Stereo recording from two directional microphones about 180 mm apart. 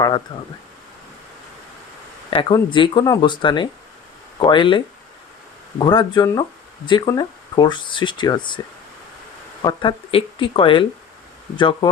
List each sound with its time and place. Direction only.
0.3 s speech: 30° left (ahead or behind)
2.3 s speech: 30° left (ahead or behind)
5.8 s speech: 25° left (ahead or behind)